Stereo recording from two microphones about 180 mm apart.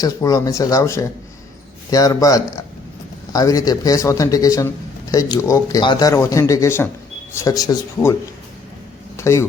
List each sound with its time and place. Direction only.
0.0 s speech: 15° left (ahead or behind)
9.1 s speech: 15° left (ahead or behind)